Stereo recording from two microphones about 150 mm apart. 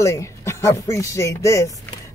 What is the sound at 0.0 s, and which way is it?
Speech, 20° left (ahead or behind).